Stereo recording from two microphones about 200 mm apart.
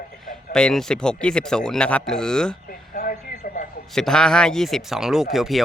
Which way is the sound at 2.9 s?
50° left (ahead or behind).